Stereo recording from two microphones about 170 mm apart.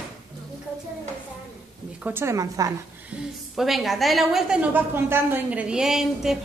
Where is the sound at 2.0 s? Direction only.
10° right (ahead or behind).